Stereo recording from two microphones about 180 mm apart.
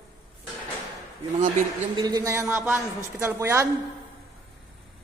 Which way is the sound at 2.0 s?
20° right (ahead or behind).